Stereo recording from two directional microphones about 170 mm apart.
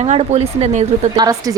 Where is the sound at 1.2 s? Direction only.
20° right (ahead or behind).